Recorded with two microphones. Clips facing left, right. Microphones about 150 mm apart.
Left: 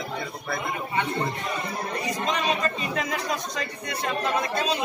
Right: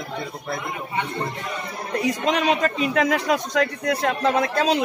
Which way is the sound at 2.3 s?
90° right.